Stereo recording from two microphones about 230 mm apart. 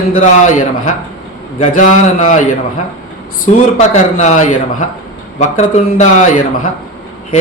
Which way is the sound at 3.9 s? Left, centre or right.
Left.